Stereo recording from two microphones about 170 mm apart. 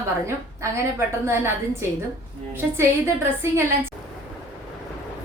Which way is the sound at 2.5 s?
15° right (ahead or behind).